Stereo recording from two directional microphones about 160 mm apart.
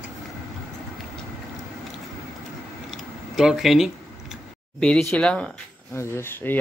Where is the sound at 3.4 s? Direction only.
Centre (ahead or behind); by 6.5 s 15° left (ahead or behind).